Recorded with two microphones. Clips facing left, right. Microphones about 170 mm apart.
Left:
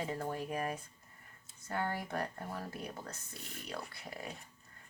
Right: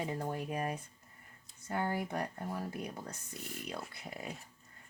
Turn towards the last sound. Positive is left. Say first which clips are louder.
# right 1 dB
turn(degrees=-20)  # may be behind; listen again after turning